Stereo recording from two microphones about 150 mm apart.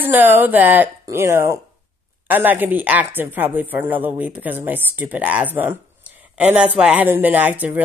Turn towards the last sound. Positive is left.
turn(degrees=-10)  # may be behind; listen again after turning